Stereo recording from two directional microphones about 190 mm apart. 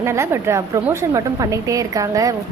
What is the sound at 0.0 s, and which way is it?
A woman's voice, 15° right (ahead or behind).